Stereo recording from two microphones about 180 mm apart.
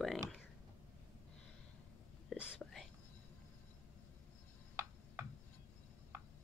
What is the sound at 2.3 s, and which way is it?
Whispering, 5° right (ahead or behind).